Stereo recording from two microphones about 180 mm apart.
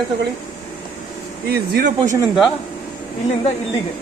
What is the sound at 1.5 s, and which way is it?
Speech, 60° right (ahead or behind).